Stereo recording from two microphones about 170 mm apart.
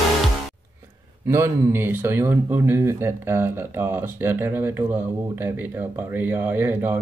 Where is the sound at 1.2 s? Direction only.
15° right (ahead or behind).